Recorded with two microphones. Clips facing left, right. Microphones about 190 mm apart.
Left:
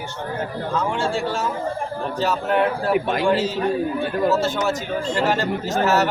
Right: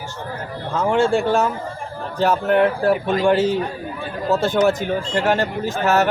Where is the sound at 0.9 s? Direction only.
55° right (ahead or behind).